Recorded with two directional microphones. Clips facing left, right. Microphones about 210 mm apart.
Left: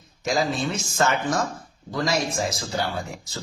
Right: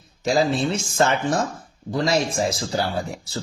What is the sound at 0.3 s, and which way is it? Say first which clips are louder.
Speech: right 4 dB; 30° right (ahead or behind).